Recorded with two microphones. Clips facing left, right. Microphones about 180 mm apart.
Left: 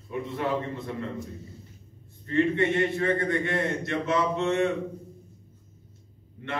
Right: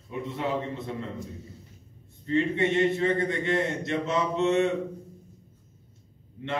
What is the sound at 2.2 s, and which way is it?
A man's voice, 20° right (ahead or behind).